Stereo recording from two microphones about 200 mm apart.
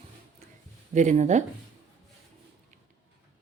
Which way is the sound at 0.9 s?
35° right (ahead or behind).